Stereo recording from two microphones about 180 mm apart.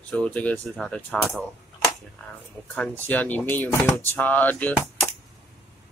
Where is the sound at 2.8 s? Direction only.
10° left (ahead or behind).